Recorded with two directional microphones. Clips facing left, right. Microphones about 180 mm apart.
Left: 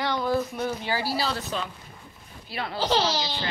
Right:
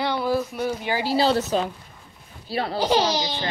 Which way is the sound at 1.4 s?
40° right (ahead or behind).